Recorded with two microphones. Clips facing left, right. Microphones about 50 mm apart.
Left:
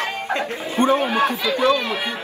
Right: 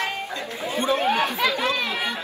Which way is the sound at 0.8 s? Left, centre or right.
Left.